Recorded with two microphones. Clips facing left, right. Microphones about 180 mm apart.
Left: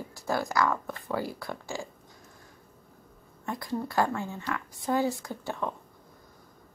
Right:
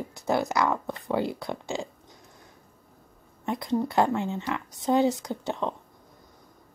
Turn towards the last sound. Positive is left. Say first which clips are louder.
# right 4 dB
turn(degrees=-20)  # may be behind; listen again after turning